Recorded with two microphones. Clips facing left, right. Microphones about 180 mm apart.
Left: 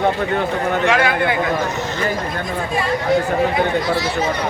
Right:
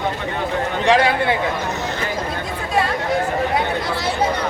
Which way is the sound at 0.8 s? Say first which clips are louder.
Right 3 dB; 35° right (ahead or behind).